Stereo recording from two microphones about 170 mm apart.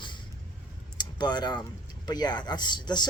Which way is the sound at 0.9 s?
25° left (ahead or behind).